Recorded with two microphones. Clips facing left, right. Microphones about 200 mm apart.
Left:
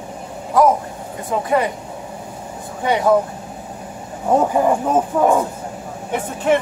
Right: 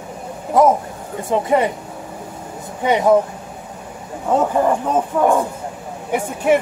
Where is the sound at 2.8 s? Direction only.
20° right (ahead or behind).